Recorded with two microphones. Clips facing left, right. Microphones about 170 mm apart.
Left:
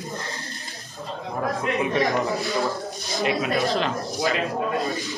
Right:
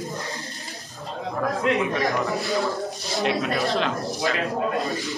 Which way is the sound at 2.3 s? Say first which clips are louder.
Even; centre (ahead or behind).